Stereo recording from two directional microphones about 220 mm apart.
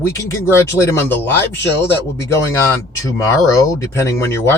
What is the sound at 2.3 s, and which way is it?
Speech, 15° left (ahead or behind).